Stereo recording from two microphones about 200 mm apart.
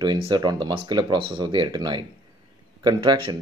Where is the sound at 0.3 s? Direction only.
20° right (ahead or behind).